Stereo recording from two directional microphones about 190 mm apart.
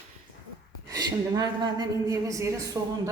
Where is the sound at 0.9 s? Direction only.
20° right (ahead or behind).